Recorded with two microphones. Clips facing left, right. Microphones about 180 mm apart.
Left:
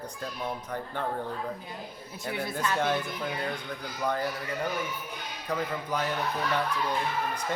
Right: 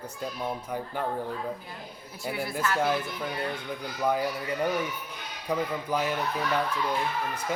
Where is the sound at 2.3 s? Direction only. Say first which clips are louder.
Even; 20° left (ahead or behind).